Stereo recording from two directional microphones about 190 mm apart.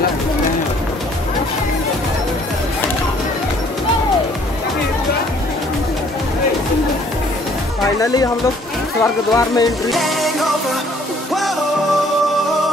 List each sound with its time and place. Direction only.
8.0 s music: 20° left (ahead or behind)
9.0 s speech: 20° left (ahead or behind)
9.8 s music: centre (ahead or behind)